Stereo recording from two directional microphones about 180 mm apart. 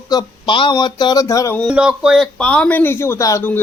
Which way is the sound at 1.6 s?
5° right (ahead or behind).